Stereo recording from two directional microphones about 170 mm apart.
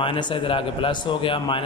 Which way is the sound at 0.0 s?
30° left (ahead or behind).